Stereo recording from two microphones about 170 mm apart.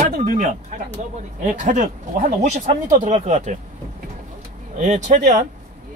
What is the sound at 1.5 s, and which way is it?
Speech, 45° right (ahead or behind).